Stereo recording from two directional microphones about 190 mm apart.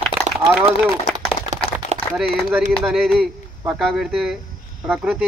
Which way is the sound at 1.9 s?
35° right (ahead or behind).